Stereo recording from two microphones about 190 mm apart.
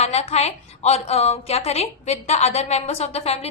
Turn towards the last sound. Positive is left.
turn(degrees=35)  # may be behind; listen again after turning